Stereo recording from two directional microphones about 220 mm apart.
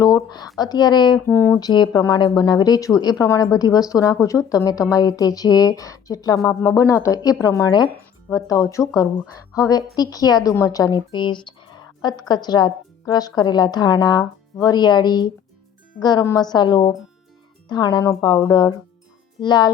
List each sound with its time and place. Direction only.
0.0 s a woman's voice: 20° left (ahead or behind)
9.0 s a woman's voice: 15° left (ahead or behind)